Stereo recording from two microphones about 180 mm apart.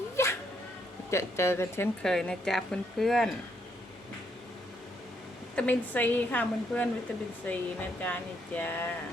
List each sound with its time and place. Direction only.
0.2 s a sound: 15° left (ahead or behind)
1.1 s speech: 15° left (ahead or behind)
5.5 s speech: 10° left (ahead or behind)